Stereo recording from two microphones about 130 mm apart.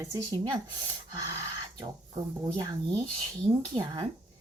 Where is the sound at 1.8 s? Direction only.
30° right (ahead or behind).